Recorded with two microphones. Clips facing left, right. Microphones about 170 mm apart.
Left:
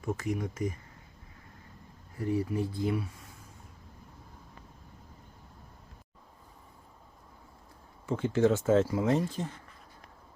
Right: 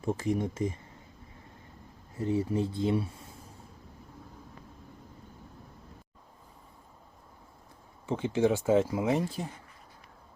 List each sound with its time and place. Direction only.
0.0 s speech: 30° right (ahead or behind)
2.1 s speech: 25° right (ahead or behind)
8.0 s speech: 20° right (ahead or behind)